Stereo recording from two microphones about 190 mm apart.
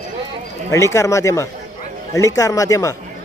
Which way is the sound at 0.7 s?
15° left (ahead or behind).